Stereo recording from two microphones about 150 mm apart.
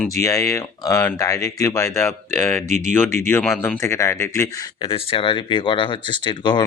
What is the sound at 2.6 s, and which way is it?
Speech, 50° right (ahead or behind).